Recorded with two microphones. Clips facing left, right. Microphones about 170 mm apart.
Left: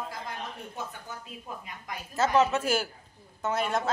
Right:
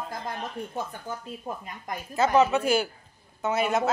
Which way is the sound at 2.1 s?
Centre (ahead or behind).